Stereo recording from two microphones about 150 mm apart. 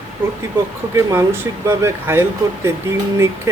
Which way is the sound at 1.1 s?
20° right (ahead or behind).